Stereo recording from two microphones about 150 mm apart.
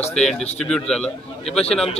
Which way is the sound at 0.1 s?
5° left (ahead or behind).